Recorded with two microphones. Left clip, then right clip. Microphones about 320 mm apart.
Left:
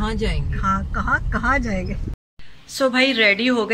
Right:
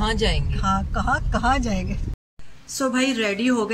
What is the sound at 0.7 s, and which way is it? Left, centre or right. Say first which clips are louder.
Speech: left 2 dB; right.